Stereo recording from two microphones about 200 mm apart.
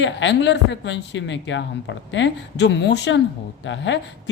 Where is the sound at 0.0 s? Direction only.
65° left (ahead or behind).